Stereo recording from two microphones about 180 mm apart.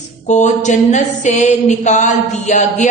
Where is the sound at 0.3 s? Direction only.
40° left (ahead or behind).